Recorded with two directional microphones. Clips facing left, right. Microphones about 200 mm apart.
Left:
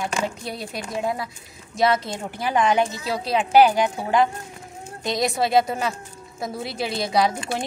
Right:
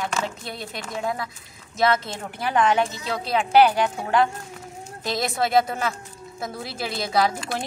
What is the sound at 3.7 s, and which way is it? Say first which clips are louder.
Speech: left 2 dB; 15° left (ahead or behind).